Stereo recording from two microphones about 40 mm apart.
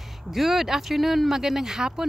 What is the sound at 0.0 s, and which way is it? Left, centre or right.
Speech, centre.